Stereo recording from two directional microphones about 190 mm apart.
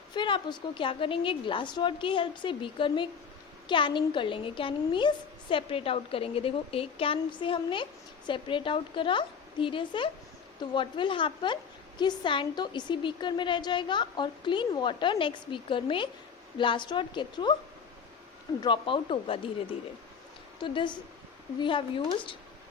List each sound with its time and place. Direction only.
0.1 s a woman's voice: 25° left (ahead or behind)
18.6 s a woman's voice: 25° left (ahead or behind)
20.6 s a woman's voice: 25° left (ahead or behind)